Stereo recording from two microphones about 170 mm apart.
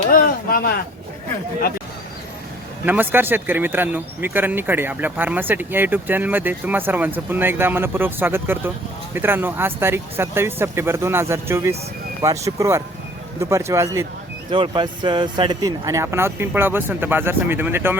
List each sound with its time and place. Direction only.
0.1 s speech: 55° left (ahead or behind)
2.8 s speech: 10° right (ahead or behind)
14.5 s speech: 30° right (ahead or behind); by 17.9 s 15° right (ahead or behind)